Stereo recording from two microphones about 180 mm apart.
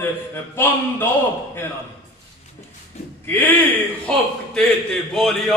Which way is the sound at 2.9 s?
35° left (ahead or behind).